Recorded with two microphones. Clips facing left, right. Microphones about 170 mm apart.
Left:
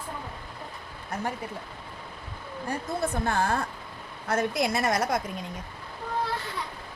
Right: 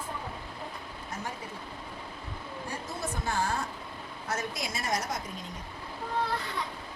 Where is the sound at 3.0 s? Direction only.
60° left (ahead or behind).